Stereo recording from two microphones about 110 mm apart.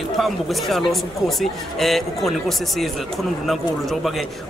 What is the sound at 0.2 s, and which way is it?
Speech, centre (ahead or behind).